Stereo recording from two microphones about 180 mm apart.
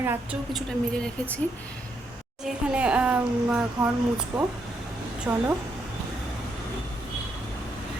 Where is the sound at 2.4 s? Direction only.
5° right (ahead or behind).